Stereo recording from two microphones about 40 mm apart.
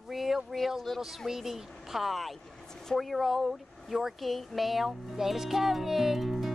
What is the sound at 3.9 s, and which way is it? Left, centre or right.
Music, centre.